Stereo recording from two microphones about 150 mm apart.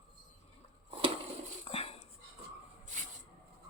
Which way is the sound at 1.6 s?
40° left (ahead or behind).